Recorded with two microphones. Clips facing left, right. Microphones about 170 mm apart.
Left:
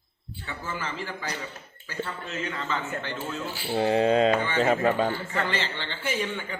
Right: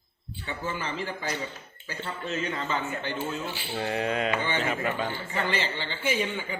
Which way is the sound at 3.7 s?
30° left (ahead or behind).